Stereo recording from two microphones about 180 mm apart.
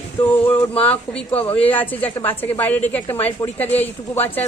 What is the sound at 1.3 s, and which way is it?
Speech, 30° left (ahead or behind).